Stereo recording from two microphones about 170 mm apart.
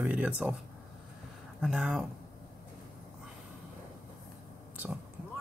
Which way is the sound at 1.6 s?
5° right (ahead or behind).